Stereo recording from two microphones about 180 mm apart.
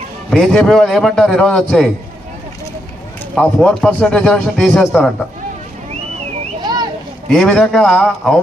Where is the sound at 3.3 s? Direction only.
5° left (ahead or behind).